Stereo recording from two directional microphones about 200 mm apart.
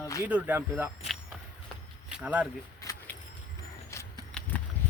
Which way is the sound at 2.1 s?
5° right (ahead or behind).